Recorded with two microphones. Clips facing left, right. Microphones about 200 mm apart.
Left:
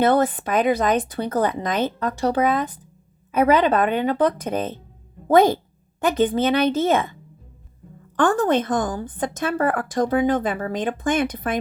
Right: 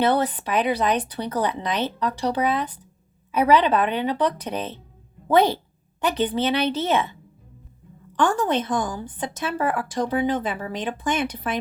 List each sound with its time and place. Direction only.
0.0 s a woman's voice: 50° left (ahead or behind)